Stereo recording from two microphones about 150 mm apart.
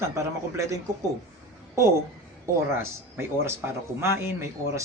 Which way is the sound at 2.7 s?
15° right (ahead or behind).